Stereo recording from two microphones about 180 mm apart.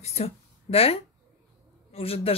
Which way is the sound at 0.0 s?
35° left (ahead or behind).